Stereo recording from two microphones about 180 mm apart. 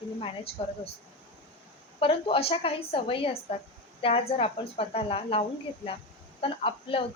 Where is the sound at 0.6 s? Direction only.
30° left (ahead or behind).